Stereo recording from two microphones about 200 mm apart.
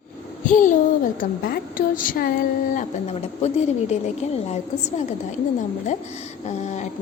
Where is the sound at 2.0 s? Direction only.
45° left (ahead or behind).